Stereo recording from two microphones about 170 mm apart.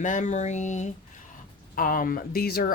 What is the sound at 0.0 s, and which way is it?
Speech, 45° left (ahead or behind).